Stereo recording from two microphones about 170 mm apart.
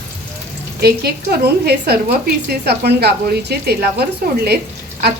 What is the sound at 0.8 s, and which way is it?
A woman's voice, 70° right (ahead or behind).